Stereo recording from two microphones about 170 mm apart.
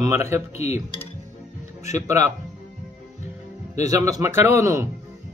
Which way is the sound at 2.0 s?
15° right (ahead or behind).